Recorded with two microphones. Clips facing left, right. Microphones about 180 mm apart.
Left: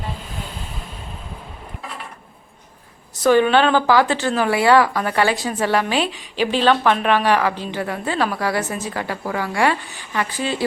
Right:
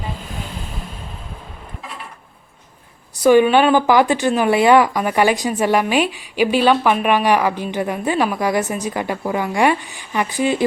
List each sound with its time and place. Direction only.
3.2 s speech: 10° right (ahead or behind)